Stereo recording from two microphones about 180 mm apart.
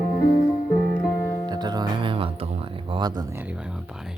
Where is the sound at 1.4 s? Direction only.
25° right (ahead or behind).